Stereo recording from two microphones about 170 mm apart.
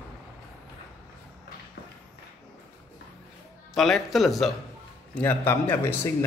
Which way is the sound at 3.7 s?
Centre (ahead or behind).